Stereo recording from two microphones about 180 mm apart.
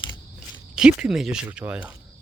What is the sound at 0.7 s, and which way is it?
Speech, 5° right (ahead or behind).